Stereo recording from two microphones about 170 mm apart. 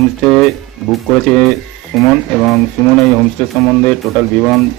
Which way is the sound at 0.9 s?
5° left (ahead or behind).